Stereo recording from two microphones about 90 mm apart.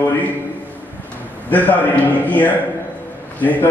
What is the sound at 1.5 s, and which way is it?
A man's voice, 20° left (ahead or behind).